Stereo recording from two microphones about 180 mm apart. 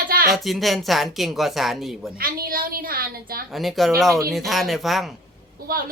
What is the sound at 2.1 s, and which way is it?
A woman's voice, 55° right (ahead or behind).